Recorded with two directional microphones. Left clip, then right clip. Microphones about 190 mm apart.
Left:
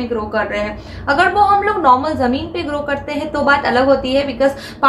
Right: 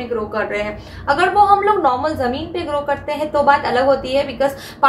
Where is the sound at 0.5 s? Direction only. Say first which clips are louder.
Left 1 dB; 5° left (ahead or behind).